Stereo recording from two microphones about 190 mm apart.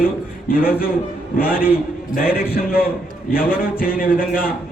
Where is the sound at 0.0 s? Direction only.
50° left (ahead or behind).